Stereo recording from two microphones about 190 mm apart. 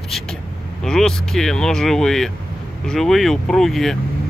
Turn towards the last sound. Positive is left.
turn(degrees=0)  # may be behind; listen again after turning